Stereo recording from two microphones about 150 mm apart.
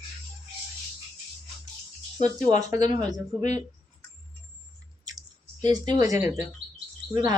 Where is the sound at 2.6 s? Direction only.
25° right (ahead or behind).